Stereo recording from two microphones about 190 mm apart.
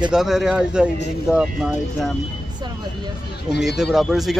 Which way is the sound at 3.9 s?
Centre (ahead or behind).